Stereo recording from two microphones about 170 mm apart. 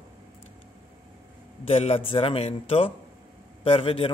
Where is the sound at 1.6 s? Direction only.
35° left (ahead or behind).